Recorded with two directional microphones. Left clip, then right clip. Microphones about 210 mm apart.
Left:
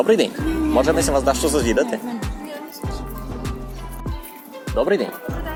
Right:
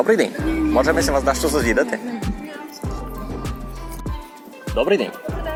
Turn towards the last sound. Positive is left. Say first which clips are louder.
# right 1 dB
turn(degrees=-10)  # may be behind; listen again after turning